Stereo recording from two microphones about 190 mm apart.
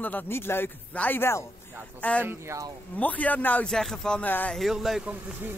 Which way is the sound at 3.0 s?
10° left (ahead or behind).